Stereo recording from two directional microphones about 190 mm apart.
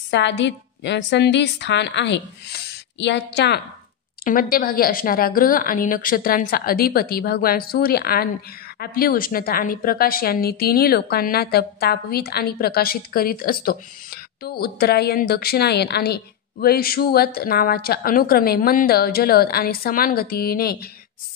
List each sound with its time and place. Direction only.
0.1 s a woman's voice: 70° left (ahead or behind)
4.2 s a woman's voice: 50° left (ahead or behind)